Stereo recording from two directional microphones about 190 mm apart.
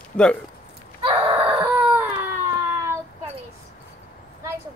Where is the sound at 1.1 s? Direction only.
30° right (ahead or behind).